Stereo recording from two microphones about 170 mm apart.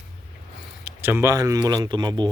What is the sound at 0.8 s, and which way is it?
Speech, 10° right (ahead or behind).